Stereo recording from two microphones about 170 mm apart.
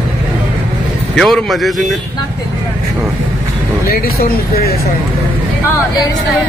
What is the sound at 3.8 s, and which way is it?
Speech, 60° left (ahead or behind).